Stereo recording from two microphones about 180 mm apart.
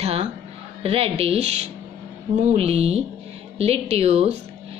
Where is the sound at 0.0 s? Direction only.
35° right (ahead or behind).